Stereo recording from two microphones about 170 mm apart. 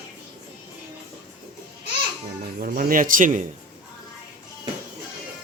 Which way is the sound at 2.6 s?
60° right (ahead or behind).